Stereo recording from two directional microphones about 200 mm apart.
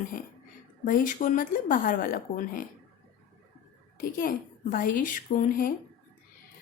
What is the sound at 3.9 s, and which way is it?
Speech, 45° left (ahead or behind).